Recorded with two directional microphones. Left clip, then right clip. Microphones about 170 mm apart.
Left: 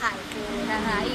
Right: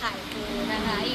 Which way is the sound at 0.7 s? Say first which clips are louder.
Left 3 dB; centre (ahead or behind).